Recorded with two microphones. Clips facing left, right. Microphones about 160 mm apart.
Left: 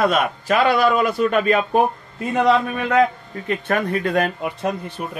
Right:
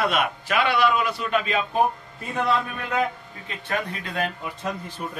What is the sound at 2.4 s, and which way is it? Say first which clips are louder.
A man's voice: left 7 dB; 85° left.